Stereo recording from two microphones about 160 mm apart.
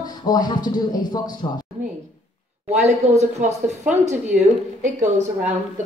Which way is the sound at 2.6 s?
45° right (ahead or behind).